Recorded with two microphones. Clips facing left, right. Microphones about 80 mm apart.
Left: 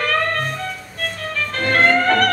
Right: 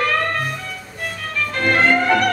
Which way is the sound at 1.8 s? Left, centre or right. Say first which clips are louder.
Left 2 dB; centre.